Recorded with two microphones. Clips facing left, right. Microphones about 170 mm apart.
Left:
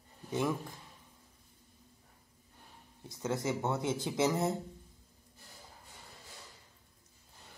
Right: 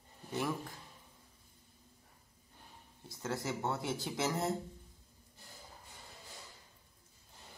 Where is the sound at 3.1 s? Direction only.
20° left (ahead or behind).